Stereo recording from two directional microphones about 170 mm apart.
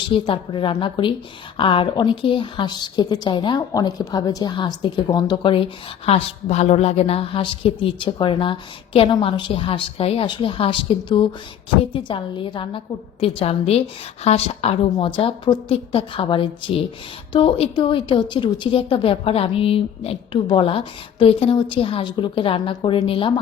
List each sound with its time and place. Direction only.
0.1 s a woman's voice: 30° left (ahead or behind)